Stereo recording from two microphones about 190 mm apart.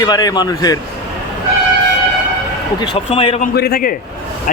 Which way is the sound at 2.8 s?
25° left (ahead or behind).